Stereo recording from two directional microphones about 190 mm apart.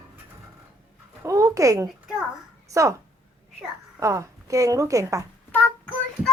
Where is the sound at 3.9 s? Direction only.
15° right (ahead or behind).